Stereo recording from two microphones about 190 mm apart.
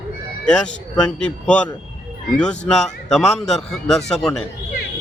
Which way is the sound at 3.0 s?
Centre (ahead or behind).